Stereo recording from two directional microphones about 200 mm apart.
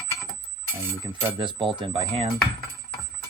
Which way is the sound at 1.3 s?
25° right (ahead or behind).